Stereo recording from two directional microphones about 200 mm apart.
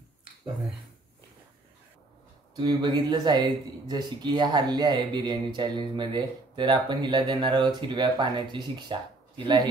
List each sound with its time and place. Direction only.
2.5 s speech: 20° right (ahead or behind)